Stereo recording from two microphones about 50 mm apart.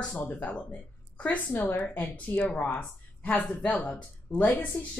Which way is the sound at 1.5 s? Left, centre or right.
Left.